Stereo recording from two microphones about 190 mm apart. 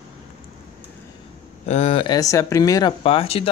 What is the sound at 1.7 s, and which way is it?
Speech, 30° left (ahead or behind).